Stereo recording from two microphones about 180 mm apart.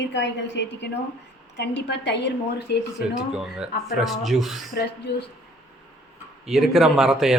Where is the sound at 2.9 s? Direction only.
5° right (ahead or behind).